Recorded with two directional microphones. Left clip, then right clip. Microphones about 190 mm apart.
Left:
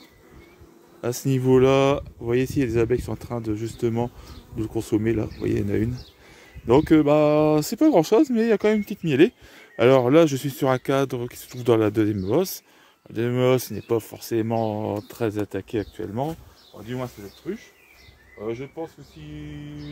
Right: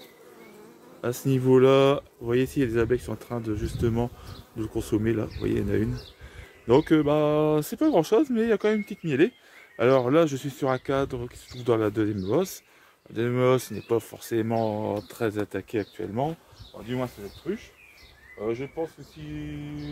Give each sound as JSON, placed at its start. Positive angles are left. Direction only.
{"t": 1.0, "sound": "speech", "side_deg": 25}
{"t": 6.7, "sound": "speech", "side_deg": 30}
{"t": 18.4, "sound": "speech", "side_deg": 15}